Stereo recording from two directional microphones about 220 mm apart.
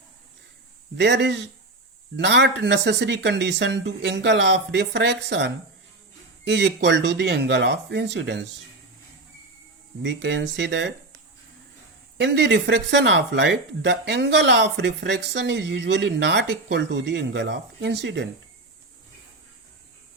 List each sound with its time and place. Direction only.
0.9 s speech: 50° right (ahead or behind)
10.0 s speech: 55° right (ahead or behind)
12.1 s speech: 50° right (ahead or behind)